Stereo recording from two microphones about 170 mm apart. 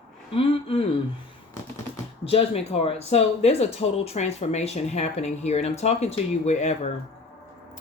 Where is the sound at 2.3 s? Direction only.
35° left (ahead or behind).